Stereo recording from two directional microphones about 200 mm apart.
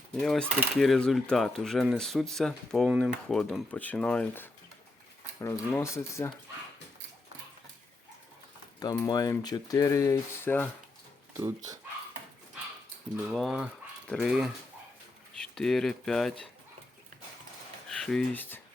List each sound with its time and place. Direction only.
0.2 s speech: 5° left (ahead or behind)
8.8 s speech: 20° left (ahead or behind)
11.3 s speech: 15° right (ahead or behind)
13.2 s speech: centre (ahead or behind)
17.8 s speech: 5° left (ahead or behind)